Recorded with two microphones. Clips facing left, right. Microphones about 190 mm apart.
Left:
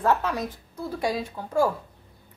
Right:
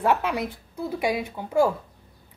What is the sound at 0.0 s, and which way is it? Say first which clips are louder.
A woman's voice: right 1 dB; 15° right (ahead or behind).